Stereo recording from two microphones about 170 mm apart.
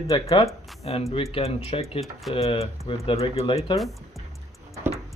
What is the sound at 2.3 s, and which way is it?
Speech, 35° left (ahead or behind).